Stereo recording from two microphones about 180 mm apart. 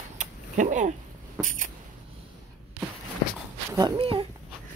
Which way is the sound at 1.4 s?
45° right (ahead or behind).